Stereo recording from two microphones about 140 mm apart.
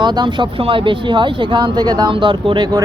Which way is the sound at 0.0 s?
30° right (ahead or behind).